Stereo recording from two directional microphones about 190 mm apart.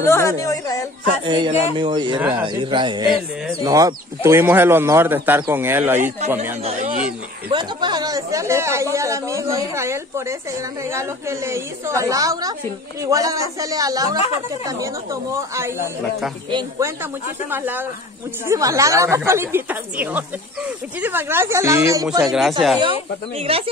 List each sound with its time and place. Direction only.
0.0 s a woman's voice: 15° left (ahead or behind)
1.2 s speech: 25° right (ahead or behind)
7.4 s speech: 25° right (ahead or behind)
17.0 s speech: 10° right (ahead or behind)
22.2 s speech: centre (ahead or behind)
22.8 s speech: 30° right (ahead or behind)